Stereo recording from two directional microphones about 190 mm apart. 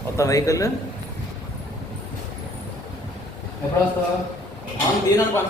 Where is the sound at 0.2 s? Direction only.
15° left (ahead or behind).